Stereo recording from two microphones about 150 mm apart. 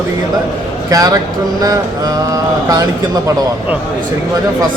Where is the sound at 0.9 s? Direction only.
25° right (ahead or behind).